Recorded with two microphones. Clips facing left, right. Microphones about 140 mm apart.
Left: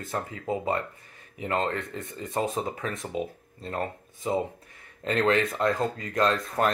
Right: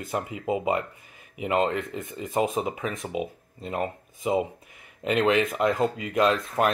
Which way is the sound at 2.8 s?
5° right (ahead or behind).